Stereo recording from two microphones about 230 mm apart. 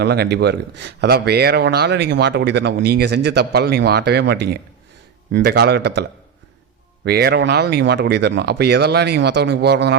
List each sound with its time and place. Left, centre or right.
0.0 s speech: right